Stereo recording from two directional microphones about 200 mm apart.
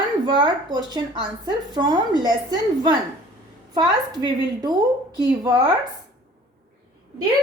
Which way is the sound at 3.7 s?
20° right (ahead or behind).